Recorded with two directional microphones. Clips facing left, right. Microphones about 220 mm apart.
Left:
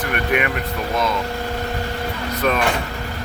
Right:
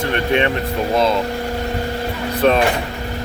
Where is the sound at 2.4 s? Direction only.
30° right (ahead or behind).